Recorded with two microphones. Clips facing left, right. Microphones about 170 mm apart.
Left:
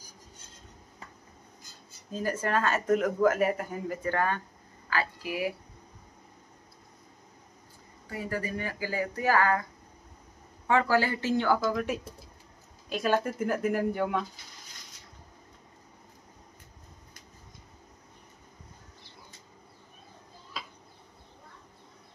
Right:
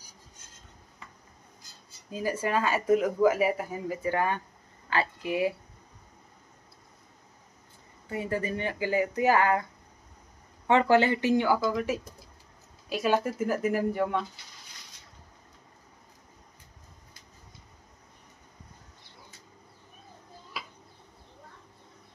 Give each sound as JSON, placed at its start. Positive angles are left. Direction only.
{"t": 2.0, "sound": "speech", "side_deg": -10}
{"t": 4.8, "sound": "speech", "side_deg": -25}
{"t": 8.1, "sound": "speech", "side_deg": -25}
{"t": 10.7, "sound": "speech", "side_deg": -20}